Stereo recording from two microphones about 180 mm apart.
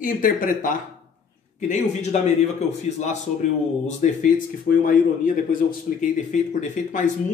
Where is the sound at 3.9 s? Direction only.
50° left (ahead or behind).